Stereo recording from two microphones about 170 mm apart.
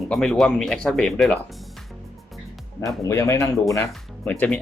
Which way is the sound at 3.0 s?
15° left (ahead or behind).